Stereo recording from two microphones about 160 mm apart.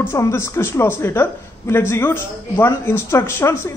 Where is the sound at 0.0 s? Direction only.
15° left (ahead or behind).